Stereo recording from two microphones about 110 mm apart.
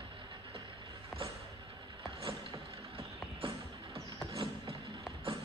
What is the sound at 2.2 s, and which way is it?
Vehicle, 50° right (ahead or behind).